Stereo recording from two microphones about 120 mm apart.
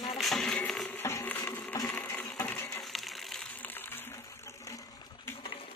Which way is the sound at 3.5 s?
15° left (ahead or behind).